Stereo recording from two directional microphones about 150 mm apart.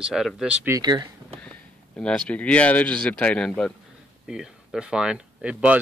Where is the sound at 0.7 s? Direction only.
30° right (ahead or behind).